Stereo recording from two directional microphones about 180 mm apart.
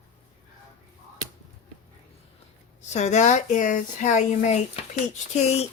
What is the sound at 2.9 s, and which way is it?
Speech, 40° left (ahead or behind).